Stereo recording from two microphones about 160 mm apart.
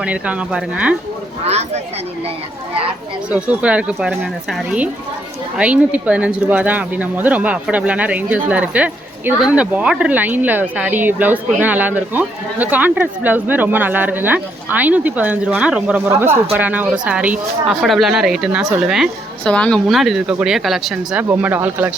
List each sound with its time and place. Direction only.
0.0 s speech: 10° right (ahead or behind)
1.5 s speech: 45° right (ahead or behind)
3.2 s speech: 10° right (ahead or behind)